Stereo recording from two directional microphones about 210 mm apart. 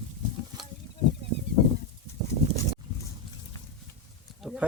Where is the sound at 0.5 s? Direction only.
20° right (ahead or behind).